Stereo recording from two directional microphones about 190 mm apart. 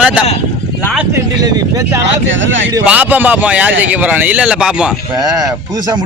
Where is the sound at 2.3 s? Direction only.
80° right.